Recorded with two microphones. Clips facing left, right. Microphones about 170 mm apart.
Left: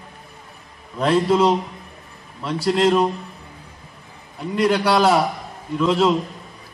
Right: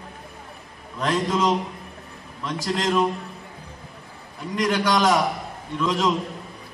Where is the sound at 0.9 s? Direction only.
30° left (ahead or behind).